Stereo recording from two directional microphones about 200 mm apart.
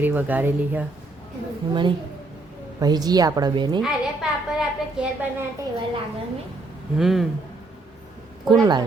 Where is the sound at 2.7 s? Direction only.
20° right (ahead or behind).